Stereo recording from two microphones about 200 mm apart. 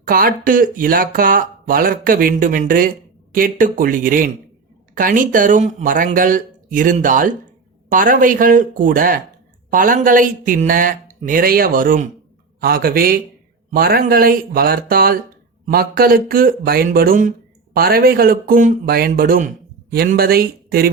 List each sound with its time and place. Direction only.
0.0 s a man's voice: 45° right (ahead or behind)